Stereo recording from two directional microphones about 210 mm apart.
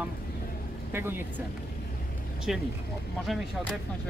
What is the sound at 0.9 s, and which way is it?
Speech, 10° right (ahead or behind).